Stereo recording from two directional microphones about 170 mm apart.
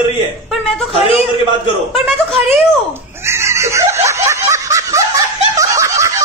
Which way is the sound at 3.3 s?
15° right (ahead or behind).